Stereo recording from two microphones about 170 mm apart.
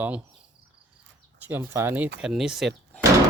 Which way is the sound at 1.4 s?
10° right (ahead or behind).